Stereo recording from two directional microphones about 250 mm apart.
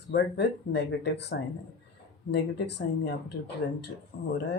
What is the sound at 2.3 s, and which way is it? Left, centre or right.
Speech, left.